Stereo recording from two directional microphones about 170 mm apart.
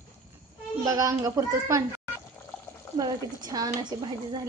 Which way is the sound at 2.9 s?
25° right (ahead or behind).